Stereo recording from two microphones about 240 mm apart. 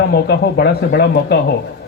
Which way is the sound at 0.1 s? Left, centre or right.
Left.